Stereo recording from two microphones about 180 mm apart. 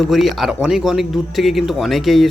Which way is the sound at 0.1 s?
Centre (ahead or behind).